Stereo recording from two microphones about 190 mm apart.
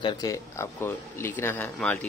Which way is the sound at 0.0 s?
20° left (ahead or behind).